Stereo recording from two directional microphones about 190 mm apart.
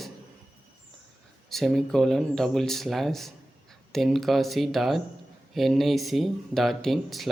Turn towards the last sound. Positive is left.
turn(degrees=0)  # may be behind; listen again after turning